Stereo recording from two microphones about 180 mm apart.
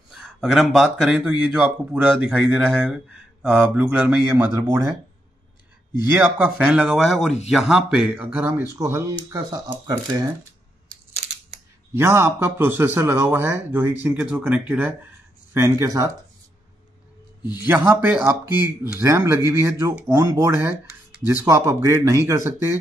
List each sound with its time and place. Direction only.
0.1 s speech: centre (ahead or behind)
4.6 s speech: 20° right (ahead or behind)
6.1 s speech: 15° right (ahead or behind)
11.9 s speech: 15° right (ahead or behind)
17.4 s a man's voice: 20° left (ahead or behind)
17.6 s speech: 10° right (ahead or behind)